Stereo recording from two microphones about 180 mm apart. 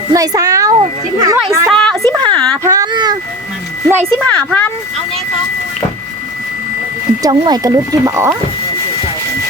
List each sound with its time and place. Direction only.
0.1 s a child's voice: 20° right (ahead or behind)
1.6 s a woman's voice: centre (ahead or behind)
2.0 s a sound: 20° right (ahead or behind)
4.1 s speech: 5° left (ahead or behind)
7.2 s a child's voice: 20° right (ahead or behind)